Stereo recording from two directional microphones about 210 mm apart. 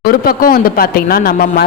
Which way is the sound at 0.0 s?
45° left (ahead or behind).